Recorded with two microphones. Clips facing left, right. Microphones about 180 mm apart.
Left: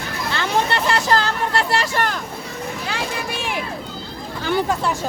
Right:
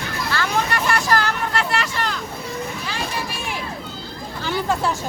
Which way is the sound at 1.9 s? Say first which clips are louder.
Left 4 dB; 50° left (ahead or behind).